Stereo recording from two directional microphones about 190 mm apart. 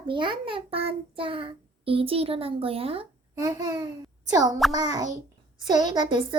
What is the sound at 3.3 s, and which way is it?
A child's voice, 20° right (ahead or behind).